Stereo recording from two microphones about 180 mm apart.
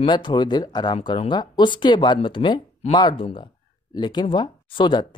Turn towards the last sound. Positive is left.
turn(degrees=25)  # may be behind; listen again after turning